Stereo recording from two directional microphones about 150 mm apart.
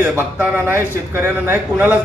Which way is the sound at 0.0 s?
15° right (ahead or behind).